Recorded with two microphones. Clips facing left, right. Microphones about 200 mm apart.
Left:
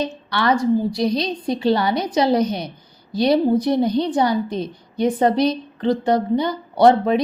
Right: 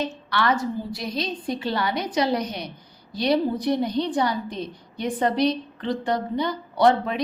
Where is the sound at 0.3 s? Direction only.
40° left (ahead or behind).